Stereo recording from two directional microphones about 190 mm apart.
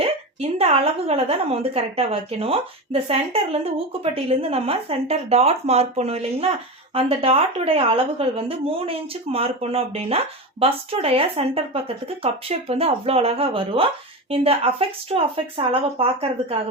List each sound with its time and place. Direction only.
0.0 s a woman's voice: 30° right (ahead or behind)